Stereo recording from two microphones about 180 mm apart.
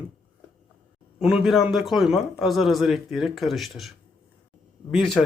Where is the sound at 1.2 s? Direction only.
5° right (ahead or behind).